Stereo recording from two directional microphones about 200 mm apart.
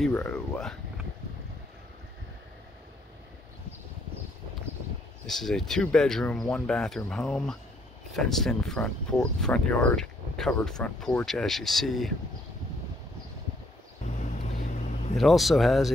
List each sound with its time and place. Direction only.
0.0 s speech: 5° left (ahead or behind)
5.2 s speech: centre (ahead or behind)
14.2 s vehicle: 35° left (ahead or behind)
15.1 s speech: centre (ahead or behind)